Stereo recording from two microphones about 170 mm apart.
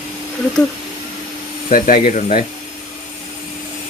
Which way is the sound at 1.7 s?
55° left (ahead or behind).